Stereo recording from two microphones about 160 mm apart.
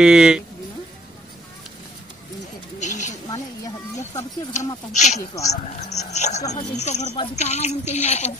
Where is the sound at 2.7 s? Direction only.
50° left (ahead or behind).